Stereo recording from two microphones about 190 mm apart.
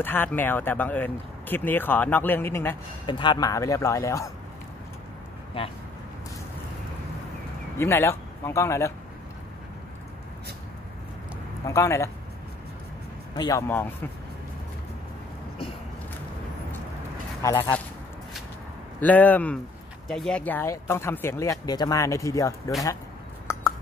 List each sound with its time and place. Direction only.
0.0 s speech: 10° left (ahead or behind)
3.1 s speech: 25° left (ahead or behind)
7.8 s speech: 15° left (ahead or behind)
11.6 s speech: 15° left (ahead or behind)
13.4 s speech: 15° left (ahead or behind)
17.4 s speech: 15° left (ahead or behind)
18.9 s speech: 10° left (ahead or behind)